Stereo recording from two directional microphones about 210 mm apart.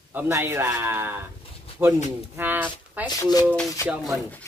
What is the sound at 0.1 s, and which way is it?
Speech, 10° right (ahead or behind).